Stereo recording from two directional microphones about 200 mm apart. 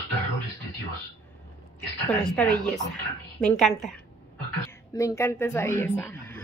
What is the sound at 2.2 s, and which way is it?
Speech, 5° left (ahead or behind).